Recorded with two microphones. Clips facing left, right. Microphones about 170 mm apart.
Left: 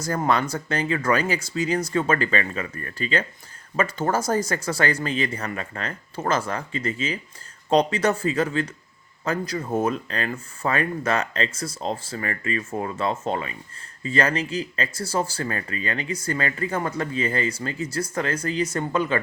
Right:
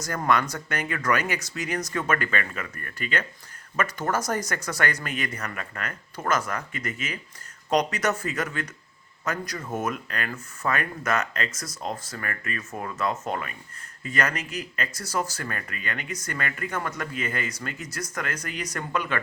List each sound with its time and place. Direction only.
0.0 s speech: 30° left (ahead or behind)